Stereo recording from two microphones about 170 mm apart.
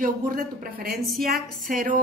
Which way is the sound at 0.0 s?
60° right (ahead or behind).